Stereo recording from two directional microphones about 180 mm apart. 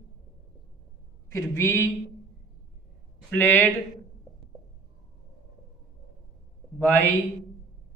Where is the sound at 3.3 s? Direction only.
10° left (ahead or behind).